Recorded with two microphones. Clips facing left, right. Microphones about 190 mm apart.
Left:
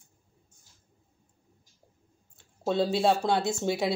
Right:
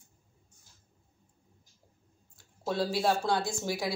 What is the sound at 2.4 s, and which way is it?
Speech, 25° left (ahead or behind).